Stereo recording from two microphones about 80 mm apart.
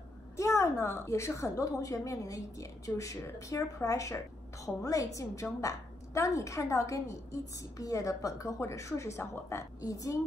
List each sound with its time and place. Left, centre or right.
0.4 s a woman's voice: left